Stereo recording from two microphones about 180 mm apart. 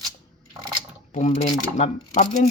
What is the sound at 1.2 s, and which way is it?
Speech, 35° left (ahead or behind).